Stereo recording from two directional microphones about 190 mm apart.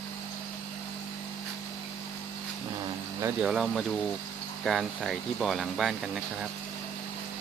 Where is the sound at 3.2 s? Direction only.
5° right (ahead or behind).